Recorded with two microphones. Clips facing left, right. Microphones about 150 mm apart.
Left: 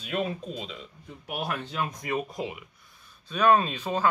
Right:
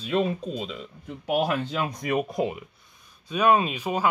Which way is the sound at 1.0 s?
75° right (ahead or behind).